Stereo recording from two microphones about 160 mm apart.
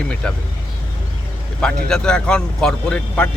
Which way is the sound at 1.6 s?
5° left (ahead or behind).